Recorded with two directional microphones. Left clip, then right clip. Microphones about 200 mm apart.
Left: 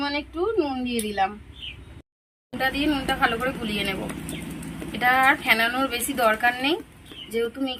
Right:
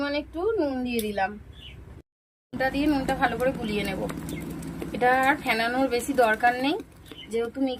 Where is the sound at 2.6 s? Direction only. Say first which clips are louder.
Left 1 dB; 20° right (ahead or behind).